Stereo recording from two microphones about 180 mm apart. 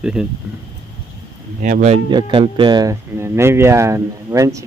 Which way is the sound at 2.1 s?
30° right (ahead or behind).